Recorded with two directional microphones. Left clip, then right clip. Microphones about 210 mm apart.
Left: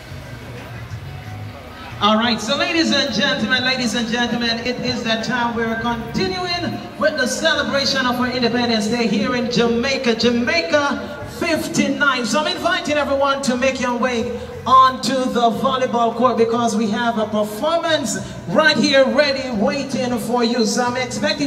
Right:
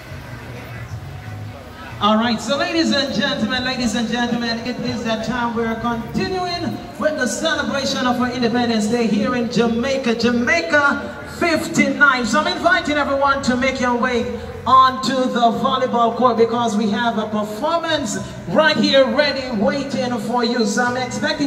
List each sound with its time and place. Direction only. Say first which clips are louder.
2.0 s a man's voice: left 1 dB; 15° left (ahead or behind)
11.7 s speech: right 5 dB; 50° left (ahead or behind)